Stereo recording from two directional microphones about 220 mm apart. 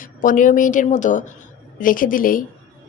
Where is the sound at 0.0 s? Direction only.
40° left (ahead or behind).